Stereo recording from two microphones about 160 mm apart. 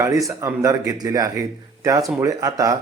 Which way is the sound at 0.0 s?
20° right (ahead or behind).